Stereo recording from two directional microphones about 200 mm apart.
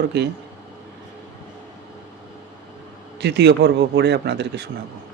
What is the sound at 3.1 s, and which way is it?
A man's voice, 55° right (ahead or behind).